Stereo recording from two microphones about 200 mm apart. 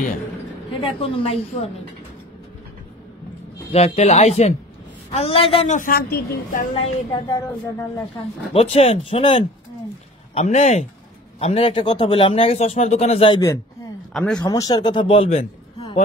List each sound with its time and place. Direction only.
0.7 s speech: 25° left (ahead or behind)
3.7 s speech: 30° left (ahead or behind)
5.8 s a woman's voice: 50° left (ahead or behind)
6.7 s speech: 25° left (ahead or behind)
7.3 s speech: 15° left (ahead or behind)
8.5 s speech: 30° left (ahead or behind)
14.1 s speech: 5° left (ahead or behind)
14.4 s a man's voice: 20° left (ahead or behind)